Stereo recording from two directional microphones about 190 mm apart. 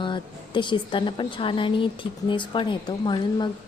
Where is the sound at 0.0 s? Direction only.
25° left (ahead or behind).